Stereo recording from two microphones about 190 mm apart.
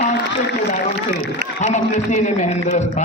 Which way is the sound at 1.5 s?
40° left (ahead or behind).